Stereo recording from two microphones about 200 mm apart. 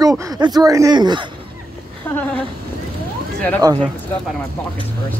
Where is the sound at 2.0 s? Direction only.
10° left (ahead or behind).